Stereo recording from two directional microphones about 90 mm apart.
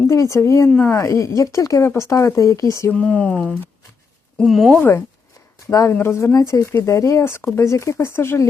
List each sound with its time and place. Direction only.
0.1 s speech: 35° left (ahead or behind)
0.7 s speech: 20° left (ahead or behind)
0.9 s speech: 35° left (ahead or behind)
2.9 s speech: 15° left (ahead or behind)
4.4 s speech: centre (ahead or behind)
4.8 s speech: 30° left (ahead or behind)